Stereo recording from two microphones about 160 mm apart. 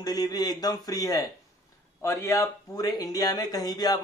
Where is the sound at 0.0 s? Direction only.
25° left (ahead or behind).